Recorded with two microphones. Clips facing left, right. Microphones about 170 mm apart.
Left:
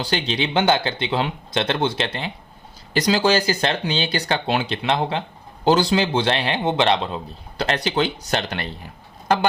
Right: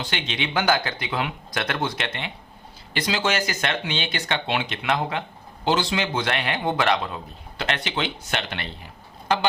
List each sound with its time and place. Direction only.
0.0 s speech: 35° left (ahead or behind)
7.6 s speech: 35° left (ahead or behind)